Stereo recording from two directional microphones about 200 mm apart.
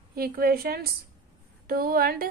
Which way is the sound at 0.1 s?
50° right (ahead or behind).